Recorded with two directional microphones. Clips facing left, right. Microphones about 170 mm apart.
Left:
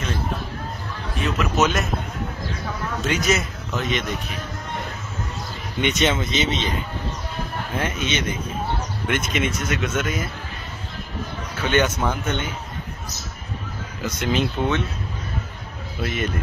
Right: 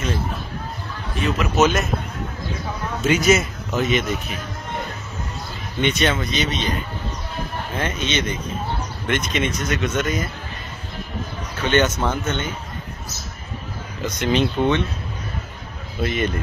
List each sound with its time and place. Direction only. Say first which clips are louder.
1.6 s a man's voice: right 3 dB; centre (ahead or behind)
3.0 s a man's voice: right 5 dB; centre (ahead or behind)
5.8 s a man's voice: right 1 dB; 20° left (ahead or behind)
7.7 s speech: right 1 dB; 10° left (ahead or behind)
11.6 s speech: right 2 dB; 10° left (ahead or behind)
14.0 s a man's voice: right 3 dB; 5° left (ahead or behind)
16.0 s a man's voice: right 4 dB; centre (ahead or behind)